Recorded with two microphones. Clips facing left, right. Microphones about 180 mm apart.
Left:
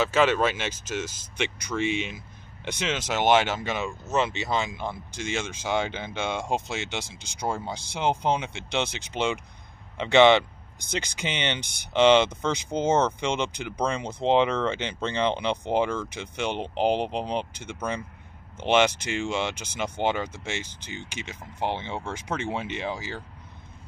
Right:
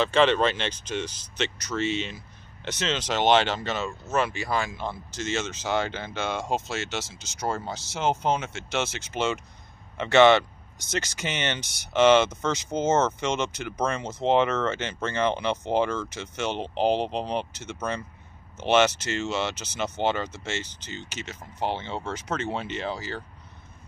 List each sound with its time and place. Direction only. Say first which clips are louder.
0.0 s speech: right 1 dB; 5° left (ahead or behind)